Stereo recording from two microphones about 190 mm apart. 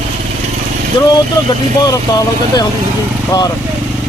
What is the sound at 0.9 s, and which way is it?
Speech, 20° left (ahead or behind).